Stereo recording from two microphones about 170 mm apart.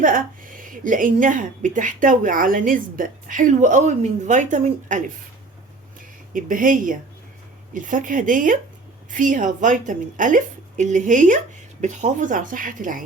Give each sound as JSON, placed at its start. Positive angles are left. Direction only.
{"t": 0.0, "sound": "a woman's voice", "side_deg": -50}
{"t": 6.3, "sound": "a woman's voice", "side_deg": -55}